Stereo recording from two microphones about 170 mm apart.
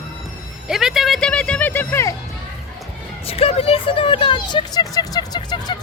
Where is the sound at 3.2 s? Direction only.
35° left (ahead or behind).